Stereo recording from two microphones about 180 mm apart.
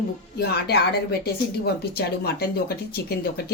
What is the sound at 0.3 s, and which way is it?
Speech, 65° left (ahead or behind).